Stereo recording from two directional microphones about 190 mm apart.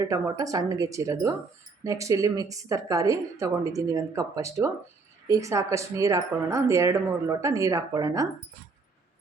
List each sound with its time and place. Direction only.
0.0 s a woman's voice: 15° right (ahead or behind)